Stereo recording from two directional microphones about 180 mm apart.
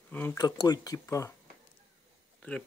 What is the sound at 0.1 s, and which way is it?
Speech, 10° left (ahead or behind).